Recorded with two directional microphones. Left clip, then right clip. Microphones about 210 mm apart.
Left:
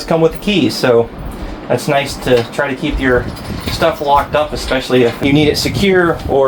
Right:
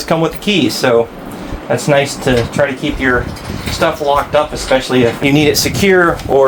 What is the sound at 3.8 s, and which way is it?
Speech, 40° right (ahead or behind).